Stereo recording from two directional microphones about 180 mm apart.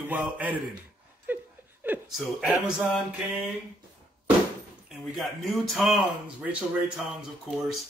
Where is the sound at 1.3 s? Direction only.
10° right (ahead or behind).